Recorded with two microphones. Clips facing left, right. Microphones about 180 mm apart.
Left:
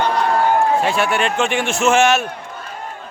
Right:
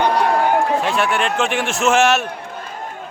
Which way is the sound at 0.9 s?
Centre (ahead or behind).